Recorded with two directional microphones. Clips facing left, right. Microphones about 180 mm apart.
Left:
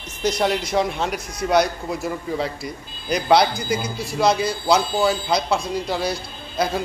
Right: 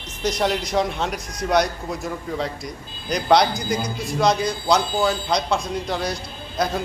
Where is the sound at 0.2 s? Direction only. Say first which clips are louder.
Left 1 dB; centre (ahead or behind).